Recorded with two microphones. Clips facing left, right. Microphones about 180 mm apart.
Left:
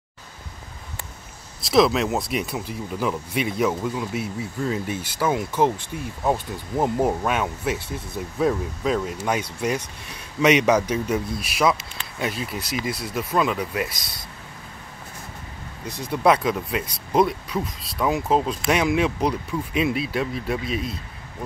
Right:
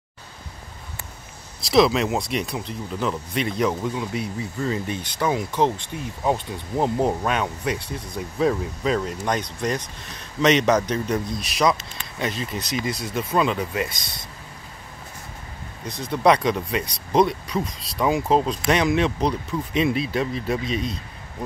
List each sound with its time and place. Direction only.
1.6 s speech: centre (ahead or behind)
16.2 s speech: 5° left (ahead or behind)